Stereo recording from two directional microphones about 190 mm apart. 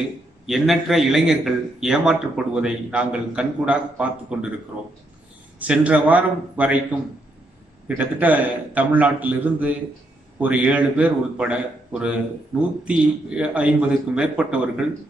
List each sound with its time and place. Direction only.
0.5 s a man's voice: centre (ahead or behind)
5.6 s a man's voice: 5° right (ahead or behind)
8.0 s a man's voice: 10° right (ahead or behind)
12.8 s a man's voice: 5° right (ahead or behind)